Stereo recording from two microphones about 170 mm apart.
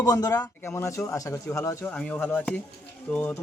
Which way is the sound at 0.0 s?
20° left (ahead or behind).